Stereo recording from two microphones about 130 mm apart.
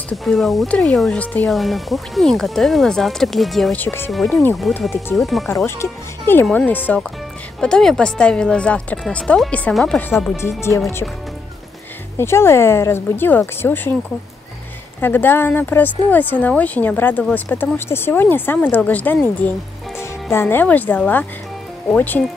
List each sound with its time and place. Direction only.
0.1 s speech: centre (ahead or behind)
3.7 s speech: 15° left (ahead or behind)
4.1 s speech: centre (ahead or behind)
5.8 s speech: 15° left (ahead or behind)
12.2 s speech: 20° left (ahead or behind)
15.0 s speech: 15° left (ahead or behind)